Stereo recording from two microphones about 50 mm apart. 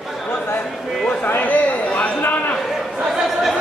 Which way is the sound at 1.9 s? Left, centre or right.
Left.